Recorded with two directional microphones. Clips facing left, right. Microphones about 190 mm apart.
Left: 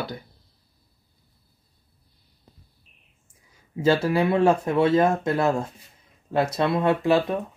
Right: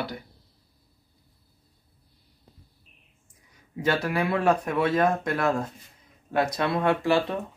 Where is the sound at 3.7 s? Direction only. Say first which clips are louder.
Left 5 dB; 25° left (ahead or behind).